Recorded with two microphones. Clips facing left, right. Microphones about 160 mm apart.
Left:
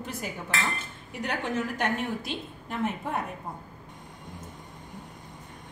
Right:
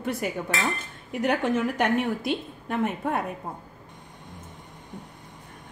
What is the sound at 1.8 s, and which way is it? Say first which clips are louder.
A woman's voice: right 5 dB; 60° right (ahead or behind).